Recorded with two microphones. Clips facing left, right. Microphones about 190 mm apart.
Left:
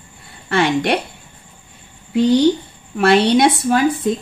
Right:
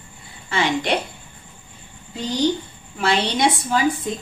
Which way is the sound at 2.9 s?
65° left (ahead or behind).